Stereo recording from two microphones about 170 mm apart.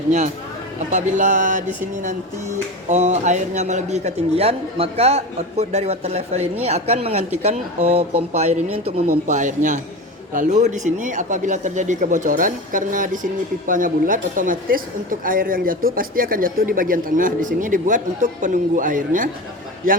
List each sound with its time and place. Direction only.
0.9 s a man's voice: 45° right (ahead or behind)
9.2 s speech: 45° right (ahead or behind)